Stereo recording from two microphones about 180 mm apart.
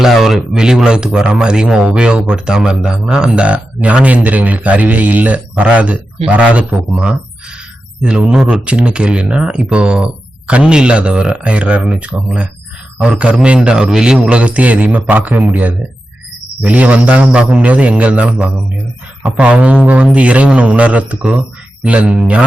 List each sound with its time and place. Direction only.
0.0 s a man's voice: centre (ahead or behind)